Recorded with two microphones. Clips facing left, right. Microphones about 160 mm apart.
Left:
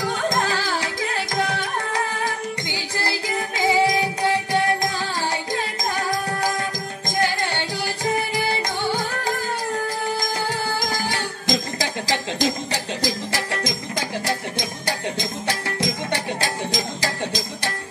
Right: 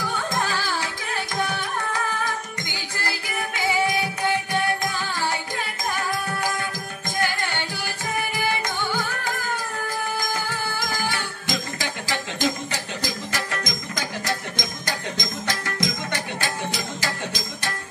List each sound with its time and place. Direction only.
0.0 s music: 90° left
0.4 s music: 40° left (ahead or behind)
3.0 s music: 35° left (ahead or behind)
10.5 s music: 35° left (ahead or behind)